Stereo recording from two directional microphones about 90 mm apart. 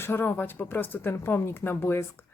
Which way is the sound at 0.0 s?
25° left (ahead or behind).